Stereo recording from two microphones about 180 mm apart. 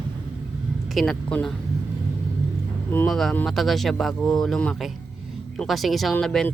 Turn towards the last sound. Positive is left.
turn(degrees=5)  # may be behind; listen again after turning